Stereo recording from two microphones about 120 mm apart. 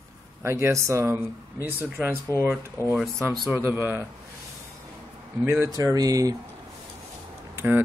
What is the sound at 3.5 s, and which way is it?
Speech, 20° right (ahead or behind).